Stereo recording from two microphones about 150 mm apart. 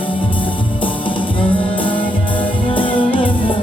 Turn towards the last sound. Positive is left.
turn(degrees=35)  # may be behind; listen again after turning